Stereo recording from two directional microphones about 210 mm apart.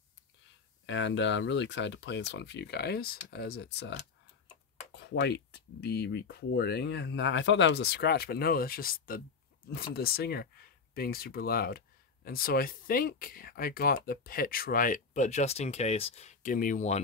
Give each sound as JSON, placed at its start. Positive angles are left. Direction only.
{"t": 0.8, "sound": "speech", "side_deg": 60}
{"t": 4.9, "sound": "speech", "side_deg": 55}